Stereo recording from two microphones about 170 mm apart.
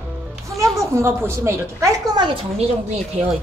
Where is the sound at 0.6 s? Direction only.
15° right (ahead or behind).